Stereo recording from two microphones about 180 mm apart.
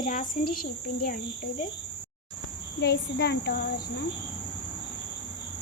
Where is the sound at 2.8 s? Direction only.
70° left (ahead or behind).